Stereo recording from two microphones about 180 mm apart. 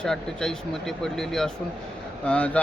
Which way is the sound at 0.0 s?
5° left (ahead or behind).